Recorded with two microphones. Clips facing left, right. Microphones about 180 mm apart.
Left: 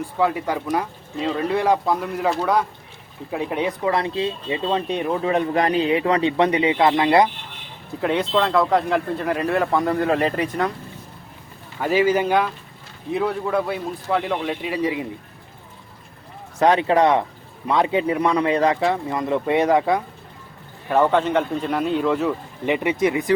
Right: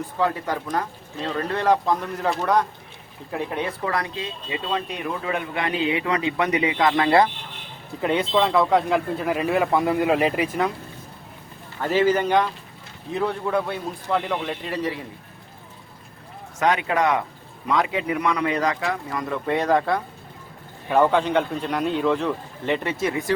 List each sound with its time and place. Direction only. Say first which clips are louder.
0.2 s speech: left 3 dB; 10° left (ahead or behind)
8.0 s speech: left 1 dB; centre (ahead or behind)
11.8 s speech: left 1 dB; 10° left (ahead or behind)
16.6 s speech: left 5 dB; 30° left (ahead or behind); by 20.0 s 15° left (ahead or behind)
20.9 s speech: left 1 dB; centre (ahead or behind); by 23.3 s 20° left (ahead or behind)